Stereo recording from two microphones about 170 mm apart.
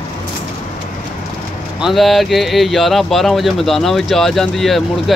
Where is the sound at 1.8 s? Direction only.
Centre (ahead or behind).